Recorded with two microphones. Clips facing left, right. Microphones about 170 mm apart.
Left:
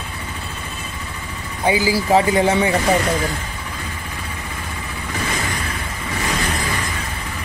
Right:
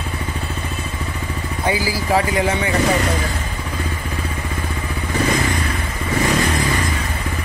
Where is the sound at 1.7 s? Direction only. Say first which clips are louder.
Left 4 dB; 20° left (ahead or behind).